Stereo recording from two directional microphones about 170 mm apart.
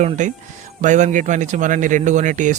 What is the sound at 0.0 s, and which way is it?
Speech, 45° right (ahead or behind).